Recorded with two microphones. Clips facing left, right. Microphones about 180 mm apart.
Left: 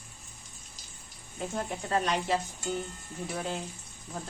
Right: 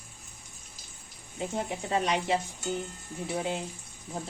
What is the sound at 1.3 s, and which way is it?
Speech, 15° right (ahead or behind).